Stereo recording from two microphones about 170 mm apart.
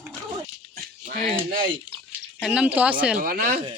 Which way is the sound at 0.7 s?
60° right (ahead or behind).